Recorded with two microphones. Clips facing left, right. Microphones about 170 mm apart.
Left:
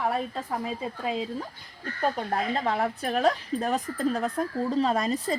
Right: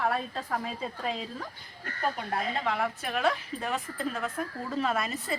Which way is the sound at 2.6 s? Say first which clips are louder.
Left 3 dB; 40° left (ahead or behind).